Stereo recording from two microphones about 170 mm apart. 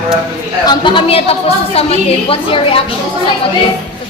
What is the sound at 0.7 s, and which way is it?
A woman's voice, 30° left (ahead or behind).